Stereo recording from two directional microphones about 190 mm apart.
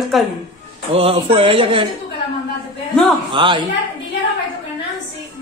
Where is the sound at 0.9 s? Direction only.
30° right (ahead or behind).